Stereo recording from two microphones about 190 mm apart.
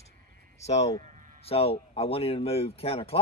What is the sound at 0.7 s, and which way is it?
Speech, 35° left (ahead or behind).